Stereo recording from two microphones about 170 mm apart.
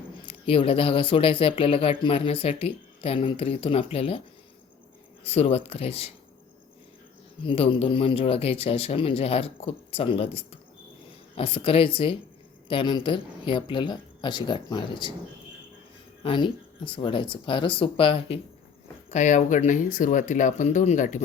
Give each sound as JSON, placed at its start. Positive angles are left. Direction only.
{"t": 0.3, "sound": "speech", "side_deg": 35}
{"t": 5.2, "sound": "speech", "side_deg": 35}
{"t": 7.4, "sound": "speech", "side_deg": 30}
{"t": 16.2, "sound": "speech", "side_deg": 30}
{"t": 19.1, "sound": "speech", "side_deg": 45}